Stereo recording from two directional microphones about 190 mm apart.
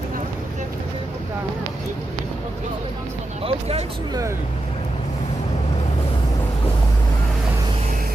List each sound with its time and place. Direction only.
3.4 s speech: 35° right (ahead or behind)